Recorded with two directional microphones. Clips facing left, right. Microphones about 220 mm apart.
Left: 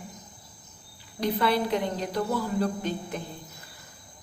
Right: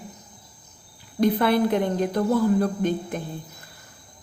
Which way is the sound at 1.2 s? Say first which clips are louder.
Right 6 dB; 50° right (ahead or behind).